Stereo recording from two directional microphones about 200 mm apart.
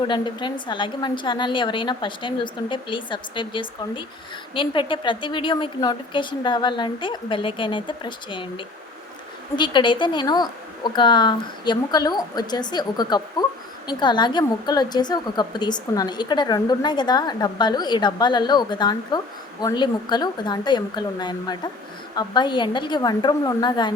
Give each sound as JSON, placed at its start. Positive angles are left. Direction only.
{"t": 0.1, "sound": "a woman's voice", "side_deg": 25}